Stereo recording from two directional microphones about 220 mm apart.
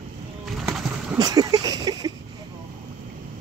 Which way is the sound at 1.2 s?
15° right (ahead or behind).